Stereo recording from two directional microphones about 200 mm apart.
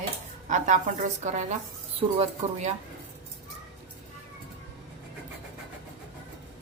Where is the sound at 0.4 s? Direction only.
40° right (ahead or behind).